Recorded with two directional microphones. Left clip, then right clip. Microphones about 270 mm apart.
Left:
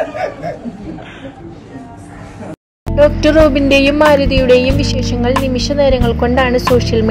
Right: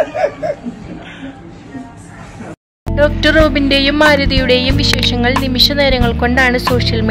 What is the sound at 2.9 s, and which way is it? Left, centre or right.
Music, centre.